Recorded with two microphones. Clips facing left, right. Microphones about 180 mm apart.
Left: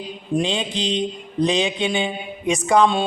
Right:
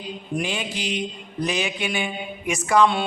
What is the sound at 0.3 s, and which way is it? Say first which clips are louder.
Mantra: left 6 dB; 25° left (ahead or behind).